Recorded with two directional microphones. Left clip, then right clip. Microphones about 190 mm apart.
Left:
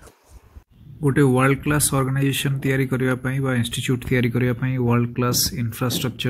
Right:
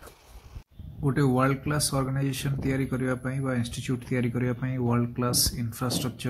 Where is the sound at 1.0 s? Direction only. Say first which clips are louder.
Left 7 dB; 15° left (ahead or behind).